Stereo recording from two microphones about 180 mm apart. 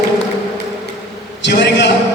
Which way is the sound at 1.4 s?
75° left (ahead or behind).